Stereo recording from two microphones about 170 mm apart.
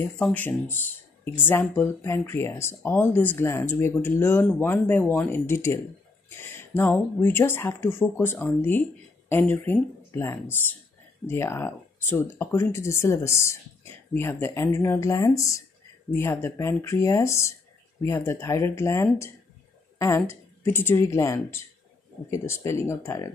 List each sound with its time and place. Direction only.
0.0 s speech: 10° left (ahead or behind)